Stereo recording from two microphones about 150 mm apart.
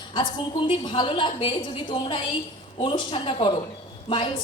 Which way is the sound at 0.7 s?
35° left (ahead or behind).